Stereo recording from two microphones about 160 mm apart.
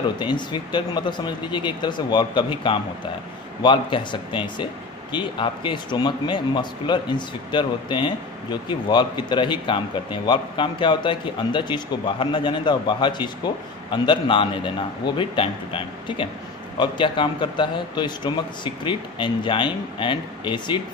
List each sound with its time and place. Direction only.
0.2 s a man's voice: 30° left (ahead or behind)